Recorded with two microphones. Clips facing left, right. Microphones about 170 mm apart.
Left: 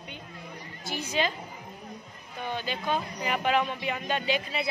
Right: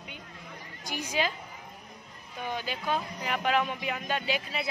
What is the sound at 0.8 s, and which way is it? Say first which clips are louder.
Speech: left 2 dB; 10° right (ahead or behind).